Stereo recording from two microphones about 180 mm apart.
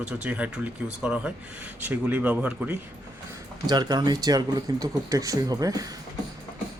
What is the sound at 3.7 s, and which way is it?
Speech, 25° right (ahead or behind).